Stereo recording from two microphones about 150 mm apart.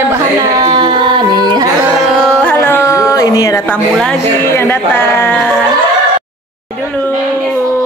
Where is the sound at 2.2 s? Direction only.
10° left (ahead or behind).